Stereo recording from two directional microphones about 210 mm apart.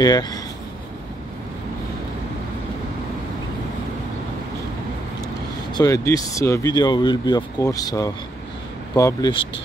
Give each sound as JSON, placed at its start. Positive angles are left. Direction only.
{"t": 0.0, "sound": "speech", "side_deg": 20}
{"t": 5.2, "sound": "speech", "side_deg": 20}